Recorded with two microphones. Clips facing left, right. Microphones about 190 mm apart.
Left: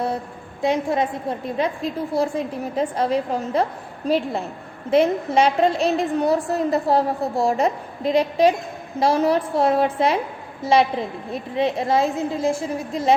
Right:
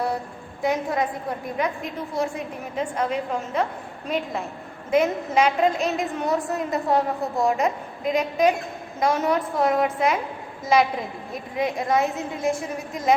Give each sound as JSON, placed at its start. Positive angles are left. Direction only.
{"t": 0.6, "sound": "a woman's voice", "side_deg": 25}